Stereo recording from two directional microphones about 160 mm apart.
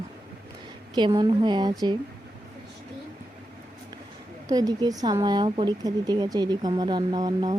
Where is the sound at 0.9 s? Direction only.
30° right (ahead or behind).